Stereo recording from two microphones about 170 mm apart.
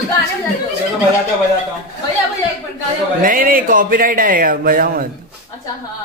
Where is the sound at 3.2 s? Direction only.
55° right (ahead or behind).